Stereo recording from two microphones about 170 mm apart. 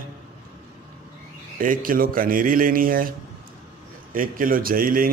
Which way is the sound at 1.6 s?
55° right (ahead or behind).